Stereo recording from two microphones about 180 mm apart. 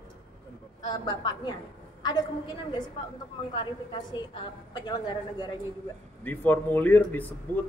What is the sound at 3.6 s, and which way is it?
A woman's voice, 25° left (ahead or behind).